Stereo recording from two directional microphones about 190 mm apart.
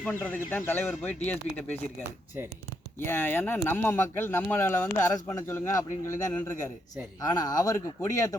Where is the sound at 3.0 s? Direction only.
10° left (ahead or behind).